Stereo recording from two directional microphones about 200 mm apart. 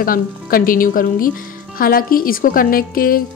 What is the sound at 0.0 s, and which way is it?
A woman's voice, 45° left (ahead or behind).